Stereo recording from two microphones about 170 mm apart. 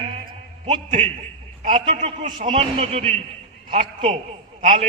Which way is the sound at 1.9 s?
40° right (ahead or behind).